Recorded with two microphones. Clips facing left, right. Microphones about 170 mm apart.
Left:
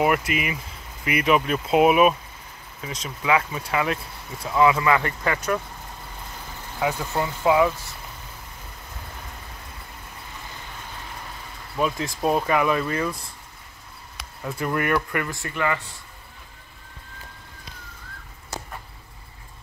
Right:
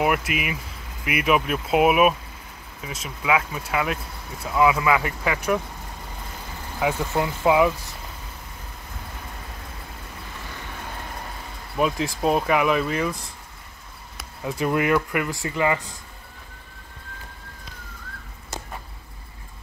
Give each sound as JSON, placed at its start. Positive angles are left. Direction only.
{"t": 0.0, "sound": "speech", "side_deg": -5}
{"t": 6.8, "sound": "speech", "side_deg": -5}
{"t": 11.7, "sound": "speech", "side_deg": -15}
{"t": 14.6, "sound": "speech", "side_deg": -20}